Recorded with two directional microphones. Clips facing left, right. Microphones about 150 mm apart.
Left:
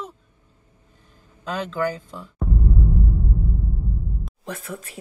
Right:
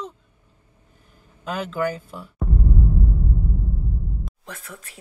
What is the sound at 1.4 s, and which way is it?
Speech, 10° right (ahead or behind).